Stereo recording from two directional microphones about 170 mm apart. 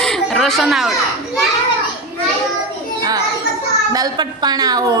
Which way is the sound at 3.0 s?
20° right (ahead or behind).